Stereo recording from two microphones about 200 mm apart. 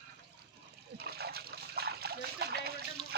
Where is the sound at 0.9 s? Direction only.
55° right (ahead or behind).